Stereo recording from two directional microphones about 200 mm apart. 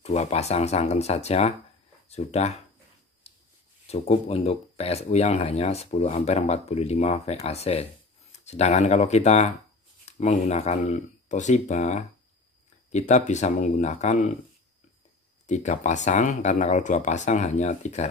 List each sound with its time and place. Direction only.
0.0 s speech: 30° left (ahead or behind)
3.8 s speech: 30° left (ahead or behind)
15.4 s speech: 35° left (ahead or behind)